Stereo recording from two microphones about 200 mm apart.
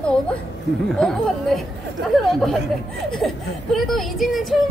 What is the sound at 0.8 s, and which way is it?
Speech, 5° left (ahead or behind).